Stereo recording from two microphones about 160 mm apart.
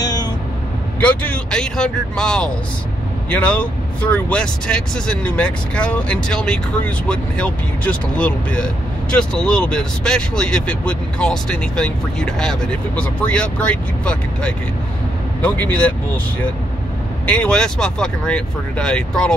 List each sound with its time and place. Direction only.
0.0 s vehicle: 25° left (ahead or behind)
1.0 s speech: 5° left (ahead or behind)
17.3 s speech: 5° left (ahead or behind)